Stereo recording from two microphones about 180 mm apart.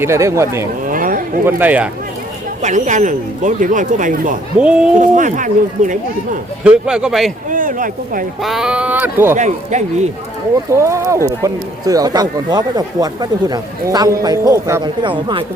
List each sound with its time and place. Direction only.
0.0 s speech: 15° right (ahead or behind)
0.9 s a sound: 50° right (ahead or behind)
1.5 s speech: 10° right (ahead or behind)
2.6 s speech: 40° right (ahead or behind)
4.5 s speech: 5° right (ahead or behind)
4.9 s speech: 45° right (ahead or behind)
6.7 s speech: 5° right (ahead or behind)
7.5 s speech: 45° right (ahead or behind)
8.4 s speech: 5° right (ahead or behind)
9.3 s speech: 40° right (ahead or behind)
10.7 s speech: 15° right (ahead or behind)